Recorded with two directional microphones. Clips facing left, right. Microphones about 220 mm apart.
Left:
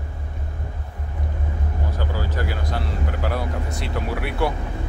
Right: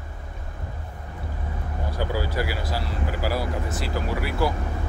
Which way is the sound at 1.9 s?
10° right (ahead or behind).